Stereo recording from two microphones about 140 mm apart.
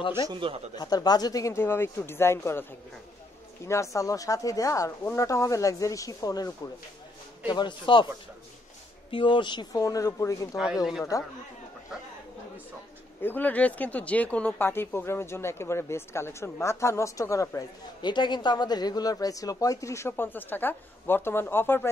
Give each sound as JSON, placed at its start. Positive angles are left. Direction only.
{"t": 0.3, "sound": "speech", "side_deg": -40}
{"t": 0.7, "sound": "speech", "side_deg": 30}
{"t": 3.6, "sound": "a man's voice", "side_deg": 20}
{"t": 9.1, "sound": "speech", "side_deg": 35}
{"t": 10.5, "sound": "speech", "side_deg": -5}
{"t": 13.2, "sound": "speech", "side_deg": 15}